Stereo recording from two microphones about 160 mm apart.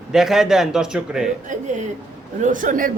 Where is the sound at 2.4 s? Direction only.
55° right (ahead or behind).